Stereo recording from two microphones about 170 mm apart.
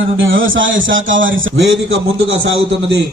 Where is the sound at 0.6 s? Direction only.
90° right.